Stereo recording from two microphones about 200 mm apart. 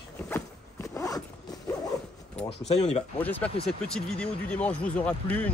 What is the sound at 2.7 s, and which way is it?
Speech, 30° left (ahead or behind).